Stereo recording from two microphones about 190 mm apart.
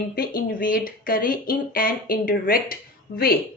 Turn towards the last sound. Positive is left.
turn(degrees=50)  # may be behind; listen again after turning